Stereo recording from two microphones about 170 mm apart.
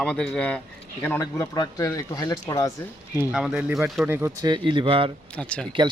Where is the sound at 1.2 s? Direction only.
20° left (ahead or behind).